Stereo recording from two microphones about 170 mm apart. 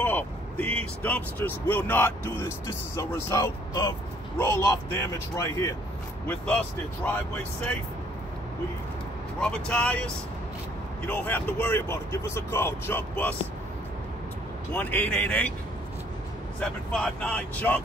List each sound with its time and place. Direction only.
0.0 s vehicle: 10° left (ahead or behind)
1.0 s speech: 10° left (ahead or behind)
9.4 s speech: 5° left (ahead or behind)
14.7 s speech: 10° left (ahead or behind)
16.5 s speech: 5° left (ahead or behind)